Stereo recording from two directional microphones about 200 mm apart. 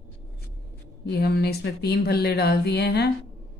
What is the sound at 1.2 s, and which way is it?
Speech, 50° left (ahead or behind).